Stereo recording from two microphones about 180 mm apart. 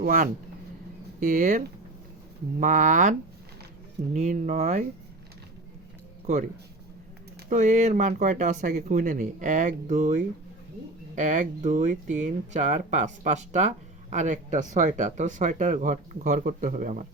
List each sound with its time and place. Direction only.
0.0 s speech: 50° right (ahead or behind)
7.5 s speech: 45° right (ahead or behind)